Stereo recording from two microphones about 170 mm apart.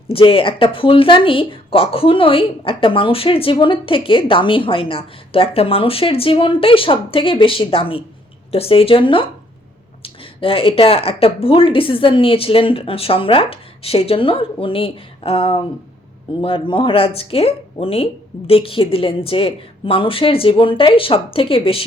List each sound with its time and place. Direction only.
0.1 s speech: 30° left (ahead or behind)